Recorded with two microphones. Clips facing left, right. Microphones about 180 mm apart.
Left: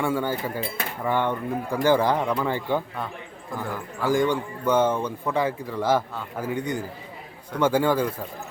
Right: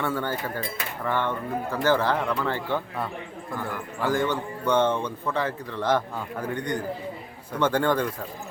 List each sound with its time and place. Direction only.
0.0 s a man's voice: 10° left (ahead or behind)
4.0 s a man's voice: 10° left (ahead or behind)